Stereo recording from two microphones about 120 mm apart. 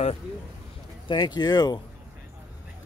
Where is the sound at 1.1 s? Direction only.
35° left (ahead or behind).